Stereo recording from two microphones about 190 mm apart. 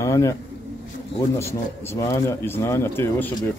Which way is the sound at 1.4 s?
15° left (ahead or behind).